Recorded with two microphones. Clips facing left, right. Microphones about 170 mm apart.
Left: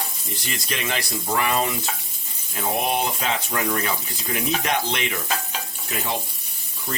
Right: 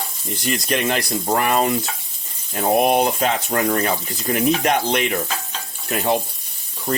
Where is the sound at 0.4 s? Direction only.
50° right (ahead or behind).